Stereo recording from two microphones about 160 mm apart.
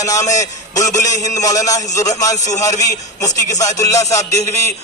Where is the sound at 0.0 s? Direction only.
20° left (ahead or behind).